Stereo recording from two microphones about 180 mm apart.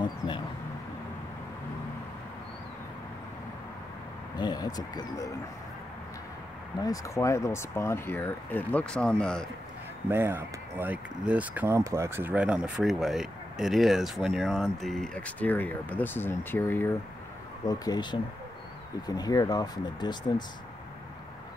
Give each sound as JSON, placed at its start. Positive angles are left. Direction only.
{"t": 4.4, "sound": "speech", "side_deg": 25}
{"t": 6.8, "sound": "speech", "side_deg": 20}
{"t": 10.0, "sound": "speech", "side_deg": -10}
{"t": 17.6, "sound": "speech", "side_deg": 20}